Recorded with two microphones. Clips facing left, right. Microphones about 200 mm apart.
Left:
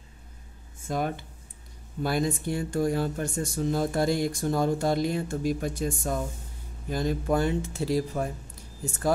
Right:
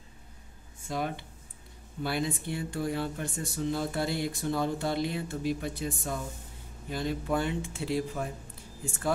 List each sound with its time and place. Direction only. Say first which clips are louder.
0.8 s speech: left 4 dB; 45° left (ahead or behind)